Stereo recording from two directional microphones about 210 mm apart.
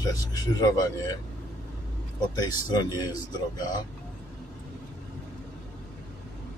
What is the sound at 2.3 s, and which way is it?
Speech, 20° left (ahead or behind).